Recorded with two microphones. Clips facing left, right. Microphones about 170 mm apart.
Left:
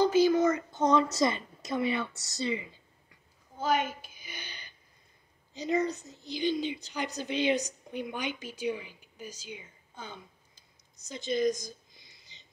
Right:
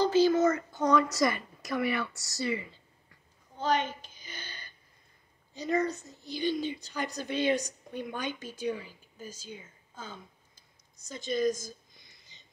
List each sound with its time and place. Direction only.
0.0 s a sound: 10° left (ahead or behind)
1.1 s a woman's voice: 20° left (ahead or behind)
3.5 s a sound: 10° left (ahead or behind)
5.7 s a woman's voice: 20° left (ahead or behind)
11.1 s a woman's voice: 20° left (ahead or behind)
11.9 s whispering: 50° right (ahead or behind)